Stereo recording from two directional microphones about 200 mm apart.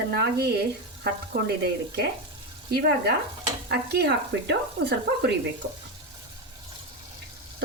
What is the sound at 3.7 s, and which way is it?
Speech, 55° right (ahead or behind).